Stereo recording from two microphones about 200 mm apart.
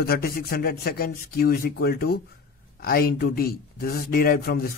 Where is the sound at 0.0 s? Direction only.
50° left (ahead or behind).